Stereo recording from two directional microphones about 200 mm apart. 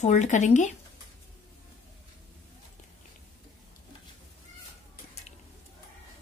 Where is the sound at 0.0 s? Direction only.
35° left (ahead or behind).